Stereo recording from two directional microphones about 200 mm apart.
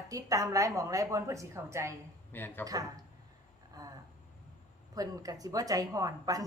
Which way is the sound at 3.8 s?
20° right (ahead or behind).